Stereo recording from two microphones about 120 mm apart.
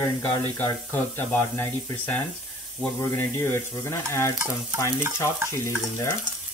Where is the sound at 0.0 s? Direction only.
20° left (ahead or behind).